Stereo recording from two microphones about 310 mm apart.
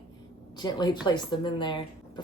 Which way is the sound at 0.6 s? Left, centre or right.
Centre.